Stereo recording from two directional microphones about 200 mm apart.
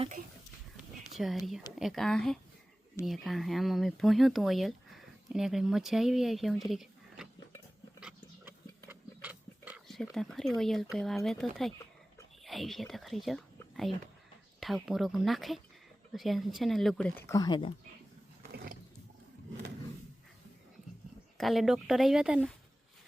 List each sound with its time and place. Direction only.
1.1 s speech: centre (ahead or behind)
8.0 s pig: 10° right (ahead or behind)
12.5 s speech: centre (ahead or behind)
14.6 s speech: centre (ahead or behind); by 17.7 s 25° left (ahead or behind)
18.4 s a sound: 45° right (ahead or behind)
21.3 s speech: centre (ahead or behind)